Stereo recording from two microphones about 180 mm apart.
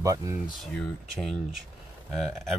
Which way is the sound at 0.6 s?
5° left (ahead or behind).